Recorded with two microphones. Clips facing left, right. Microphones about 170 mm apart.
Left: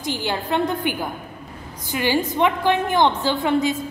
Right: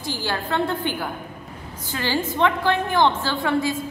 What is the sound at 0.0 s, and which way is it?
A woman's voice, 20° left (ahead or behind).